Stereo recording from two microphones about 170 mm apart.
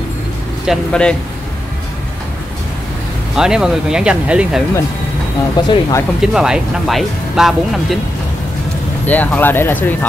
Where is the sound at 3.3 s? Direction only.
5° right (ahead or behind).